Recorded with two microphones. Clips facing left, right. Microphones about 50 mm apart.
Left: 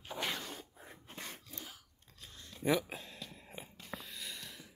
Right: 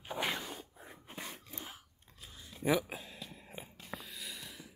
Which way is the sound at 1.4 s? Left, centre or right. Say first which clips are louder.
Right 2 dB; right.